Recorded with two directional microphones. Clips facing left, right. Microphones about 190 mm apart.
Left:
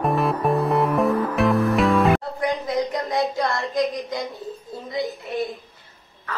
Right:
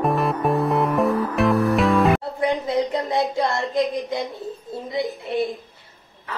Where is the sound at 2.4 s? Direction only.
25° right (ahead or behind).